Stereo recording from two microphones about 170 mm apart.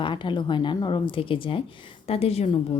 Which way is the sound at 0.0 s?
30° left (ahead or behind).